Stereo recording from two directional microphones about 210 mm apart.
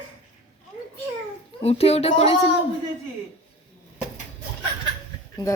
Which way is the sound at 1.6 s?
30° left (ahead or behind).